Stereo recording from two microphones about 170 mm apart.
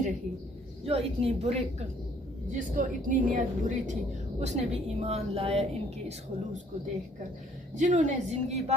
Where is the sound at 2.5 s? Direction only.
50° right (ahead or behind).